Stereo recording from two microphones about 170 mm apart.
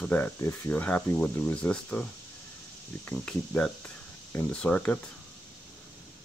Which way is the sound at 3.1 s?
5° left (ahead or behind).